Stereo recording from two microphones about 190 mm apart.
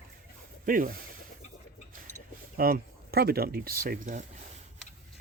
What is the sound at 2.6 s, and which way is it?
Speech, 50° right (ahead or behind).